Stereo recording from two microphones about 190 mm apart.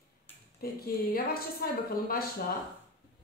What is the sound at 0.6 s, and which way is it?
A woman's voice, 50° left (ahead or behind).